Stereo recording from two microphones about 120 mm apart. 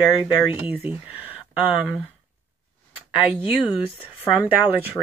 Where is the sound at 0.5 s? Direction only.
15° right (ahead or behind).